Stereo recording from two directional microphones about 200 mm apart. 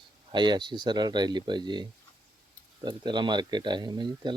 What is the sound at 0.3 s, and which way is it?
Speech, 20° right (ahead or behind).